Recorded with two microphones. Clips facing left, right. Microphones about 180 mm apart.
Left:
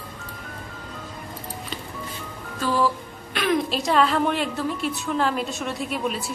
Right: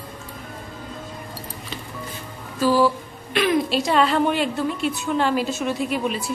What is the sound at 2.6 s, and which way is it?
A woman's voice, 5° right (ahead or behind).